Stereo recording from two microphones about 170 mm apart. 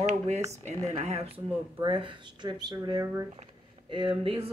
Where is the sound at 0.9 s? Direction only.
40° right (ahead or behind).